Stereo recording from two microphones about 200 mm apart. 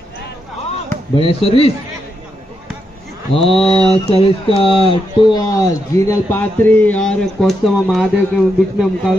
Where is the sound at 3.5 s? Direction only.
25° left (ahead or behind).